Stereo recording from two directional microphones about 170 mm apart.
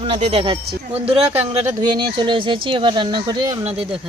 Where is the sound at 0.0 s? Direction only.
35° right (ahead or behind).